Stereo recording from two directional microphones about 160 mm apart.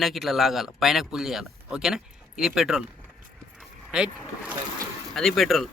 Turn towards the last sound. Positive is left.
turn(degrees=0)  # may be behind; listen again after turning